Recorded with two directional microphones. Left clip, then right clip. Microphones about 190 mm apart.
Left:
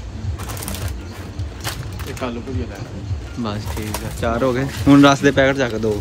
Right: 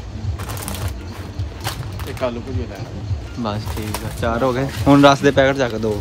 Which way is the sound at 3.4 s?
25° right (ahead or behind).